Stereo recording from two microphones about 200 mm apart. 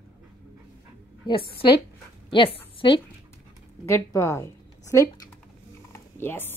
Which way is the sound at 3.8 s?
15° left (ahead or behind).